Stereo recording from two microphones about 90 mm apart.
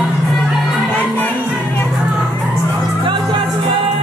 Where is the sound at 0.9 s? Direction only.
20° left (ahead or behind).